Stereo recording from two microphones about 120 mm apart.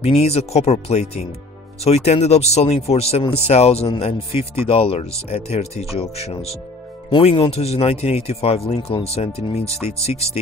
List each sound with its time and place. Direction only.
0.0 s speech: 60° left (ahead or behind)
7.1 s speech: 50° left (ahead or behind)
9.7 s speech: 25° right (ahead or behind)